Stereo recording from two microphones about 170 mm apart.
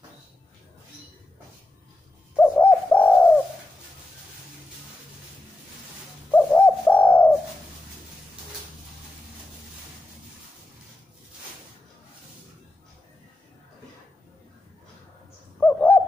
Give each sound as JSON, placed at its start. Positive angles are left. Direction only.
{"t": 2.3, "sound": "bird", "side_deg": 10}
{"t": 6.3, "sound": "bird", "side_deg": 10}
{"t": 15.6, "sound": "bird", "side_deg": 10}